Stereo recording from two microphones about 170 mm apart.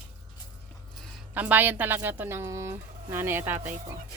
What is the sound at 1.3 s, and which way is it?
Speech, 10° right (ahead or behind).